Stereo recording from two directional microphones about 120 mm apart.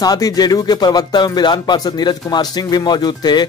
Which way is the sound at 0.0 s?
30° left (ahead or behind).